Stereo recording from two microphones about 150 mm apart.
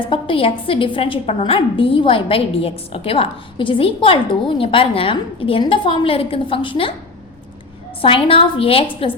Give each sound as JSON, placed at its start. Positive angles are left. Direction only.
{"t": 0.0, "sound": "a woman's voice", "side_deg": 35}
{"t": 8.0, "sound": "a woman's voice", "side_deg": 40}